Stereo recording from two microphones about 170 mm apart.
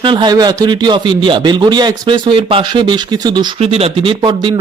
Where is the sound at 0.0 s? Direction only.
25° right (ahead or behind).